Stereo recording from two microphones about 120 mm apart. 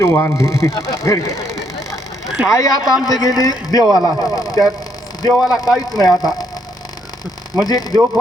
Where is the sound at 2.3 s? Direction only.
5° right (ahead or behind).